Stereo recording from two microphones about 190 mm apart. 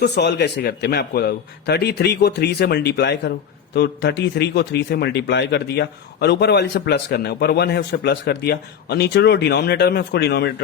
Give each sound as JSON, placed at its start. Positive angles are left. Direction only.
{"t": 0.0, "sound": "speech", "side_deg": 60}